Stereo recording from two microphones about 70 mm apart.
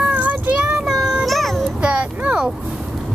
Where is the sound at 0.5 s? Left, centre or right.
Centre.